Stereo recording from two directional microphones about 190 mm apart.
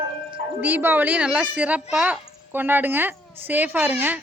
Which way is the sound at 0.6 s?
10° right (ahead or behind).